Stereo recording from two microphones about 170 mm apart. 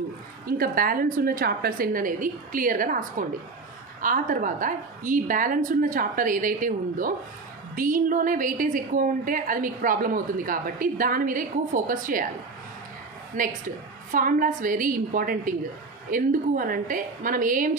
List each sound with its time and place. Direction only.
0.5 s a woman's voice: 60° right (ahead or behind)
13.4 s a woman's voice: 50° right (ahead or behind)